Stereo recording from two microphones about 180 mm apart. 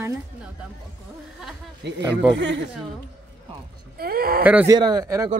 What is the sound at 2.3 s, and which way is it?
Speech, 85° right.